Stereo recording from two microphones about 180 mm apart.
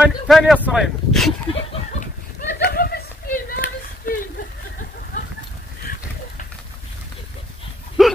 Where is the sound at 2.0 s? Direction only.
55° left (ahead or behind).